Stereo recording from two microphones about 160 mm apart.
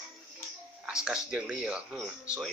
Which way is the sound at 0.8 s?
5° right (ahead or behind).